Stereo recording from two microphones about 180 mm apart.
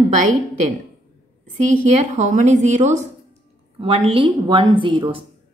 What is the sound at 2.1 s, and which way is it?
A woman's voice, 40° right (ahead or behind).